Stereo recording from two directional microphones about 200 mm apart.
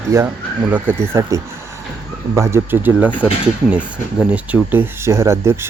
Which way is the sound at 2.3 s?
15° right (ahead or behind).